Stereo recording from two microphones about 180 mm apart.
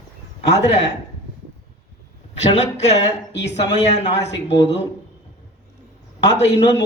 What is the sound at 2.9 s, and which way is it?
Speech, 75° left (ahead or behind).